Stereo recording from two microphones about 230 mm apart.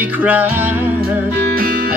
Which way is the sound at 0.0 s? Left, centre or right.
Centre.